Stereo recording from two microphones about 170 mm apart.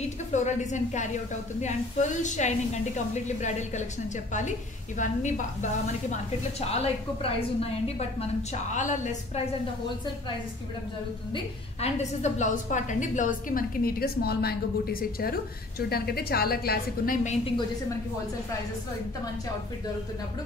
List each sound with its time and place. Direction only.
0.3 s a woman's voice: 45° left (ahead or behind)
6.7 s a woman's voice: 35° left (ahead or behind)
11.3 s a woman's voice: 40° left (ahead or behind)